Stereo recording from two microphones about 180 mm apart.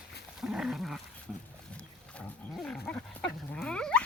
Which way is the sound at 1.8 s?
5° left (ahead or behind).